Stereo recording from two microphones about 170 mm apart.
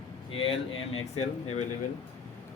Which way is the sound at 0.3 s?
35° left (ahead or behind).